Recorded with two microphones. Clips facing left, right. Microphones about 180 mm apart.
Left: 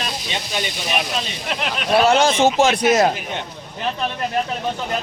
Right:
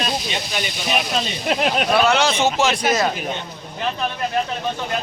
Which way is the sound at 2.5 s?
55° left (ahead or behind).